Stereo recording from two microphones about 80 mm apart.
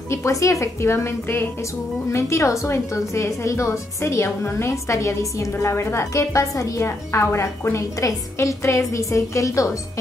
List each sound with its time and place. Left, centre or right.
0.1 s a woman's voice: left